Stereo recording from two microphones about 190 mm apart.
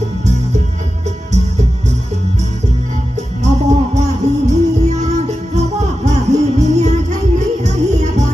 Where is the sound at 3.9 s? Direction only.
35° right (ahead or behind).